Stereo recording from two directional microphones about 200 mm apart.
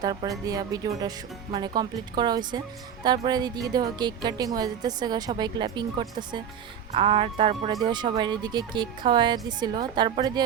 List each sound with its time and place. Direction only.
0.0 s a woman's voice: 20° right (ahead or behind)